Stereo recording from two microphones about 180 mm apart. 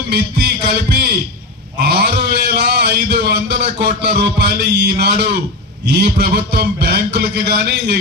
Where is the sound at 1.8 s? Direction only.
60° right (ahead or behind).